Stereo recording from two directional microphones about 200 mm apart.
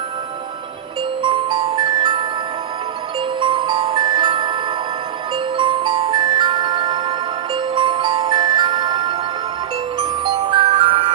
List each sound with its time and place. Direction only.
1.2 s music: 25° right (ahead or behind)
5.5 s music: 25° right (ahead or behind)